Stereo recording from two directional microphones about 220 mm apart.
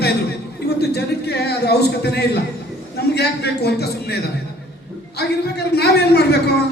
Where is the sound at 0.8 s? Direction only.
50° left (ahead or behind).